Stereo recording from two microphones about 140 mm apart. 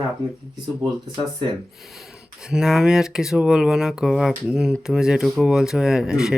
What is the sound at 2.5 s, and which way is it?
Speech, 5° right (ahead or behind).